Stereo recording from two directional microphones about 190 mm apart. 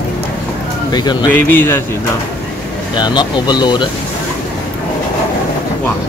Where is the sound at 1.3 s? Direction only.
10° left (ahead or behind).